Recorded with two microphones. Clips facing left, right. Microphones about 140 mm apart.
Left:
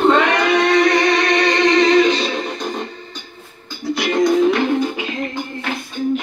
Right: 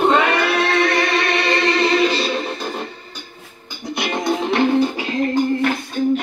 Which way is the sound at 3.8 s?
20° right (ahead or behind).